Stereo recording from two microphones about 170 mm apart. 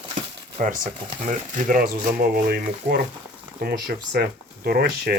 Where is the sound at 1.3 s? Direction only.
50° right (ahead or behind).